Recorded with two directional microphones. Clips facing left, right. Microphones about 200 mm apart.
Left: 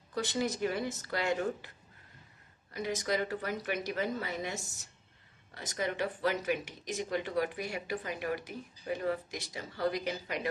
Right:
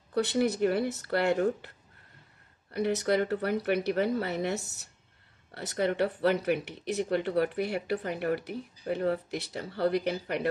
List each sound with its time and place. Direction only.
0.1 s speech: 60° right (ahead or behind)
2.7 s speech: 65° right (ahead or behind)